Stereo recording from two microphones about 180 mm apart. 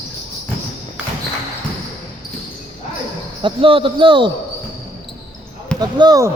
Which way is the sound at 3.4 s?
30° right (ahead or behind).